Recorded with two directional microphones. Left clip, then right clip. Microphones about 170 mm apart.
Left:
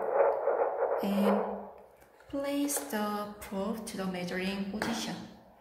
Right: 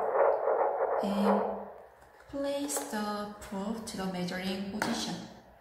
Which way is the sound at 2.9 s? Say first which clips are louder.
Left 3 dB; 55° left (ahead or behind).